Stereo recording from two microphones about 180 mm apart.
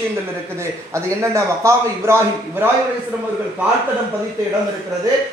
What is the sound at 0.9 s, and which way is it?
A man's voice, 15° right (ahead or behind).